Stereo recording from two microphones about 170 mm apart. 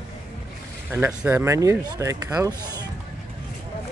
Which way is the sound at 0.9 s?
10° right (ahead or behind).